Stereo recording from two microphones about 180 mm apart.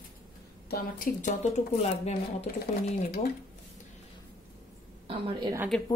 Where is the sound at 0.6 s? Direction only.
50° left (ahead or behind).